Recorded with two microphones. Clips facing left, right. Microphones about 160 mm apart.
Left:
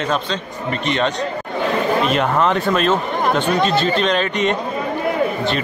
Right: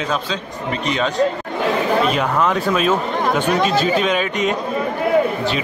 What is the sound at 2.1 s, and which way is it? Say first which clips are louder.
Speech: left 1 dB; centre (ahead or behind).